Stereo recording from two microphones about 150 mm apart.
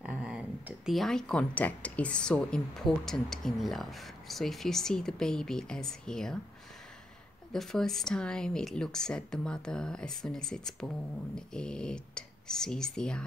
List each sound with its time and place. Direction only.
0.2 s speech: 5° right (ahead or behind)
7.5 s speech: centre (ahead or behind)